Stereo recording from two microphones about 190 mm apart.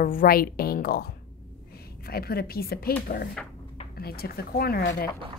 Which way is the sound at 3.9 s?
55° left (ahead or behind).